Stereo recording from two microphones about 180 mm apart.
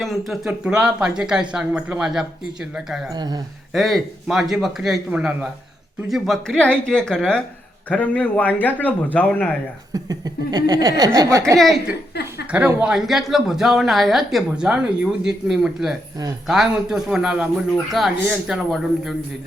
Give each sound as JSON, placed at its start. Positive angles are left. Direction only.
{"t": 0.0, "sound": "a woman's voice", "side_deg": 0}
{"t": 3.1, "sound": "speech", "side_deg": -25}
{"t": 3.7, "sound": "a woman's voice", "side_deg": 0}
{"t": 9.9, "sound": "speech", "side_deg": -20}
{"t": 11.5, "sound": "a woman's voice", "side_deg": 0}